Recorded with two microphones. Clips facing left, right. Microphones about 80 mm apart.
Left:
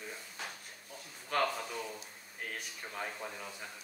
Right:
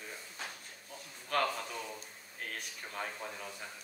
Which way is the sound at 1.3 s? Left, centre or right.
Centre.